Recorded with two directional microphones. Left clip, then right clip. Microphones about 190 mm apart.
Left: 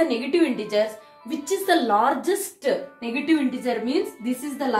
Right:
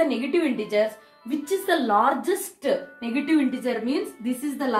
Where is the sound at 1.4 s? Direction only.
15° left (ahead or behind).